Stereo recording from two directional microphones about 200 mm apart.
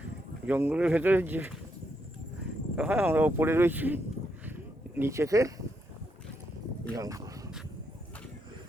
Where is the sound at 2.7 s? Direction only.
5° right (ahead or behind).